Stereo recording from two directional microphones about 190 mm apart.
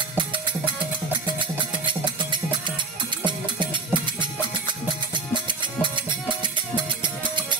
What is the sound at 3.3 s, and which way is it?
Music, 25° right (ahead or behind).